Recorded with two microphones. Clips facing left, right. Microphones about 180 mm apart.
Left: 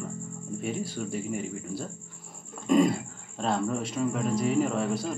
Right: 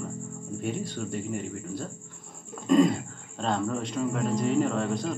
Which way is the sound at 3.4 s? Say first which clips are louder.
Even; 5° left (ahead or behind).